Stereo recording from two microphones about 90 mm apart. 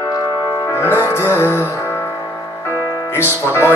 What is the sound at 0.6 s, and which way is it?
Music, 30° left (ahead or behind).